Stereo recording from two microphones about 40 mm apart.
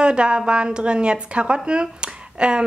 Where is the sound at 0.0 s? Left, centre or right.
Right.